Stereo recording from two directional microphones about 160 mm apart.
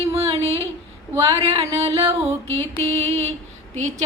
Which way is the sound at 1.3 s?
35° right (ahead or behind).